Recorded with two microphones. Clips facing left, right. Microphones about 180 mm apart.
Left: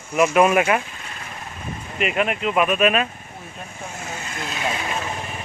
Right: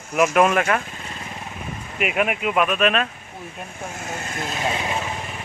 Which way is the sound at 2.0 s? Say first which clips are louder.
Even; 5° right (ahead or behind).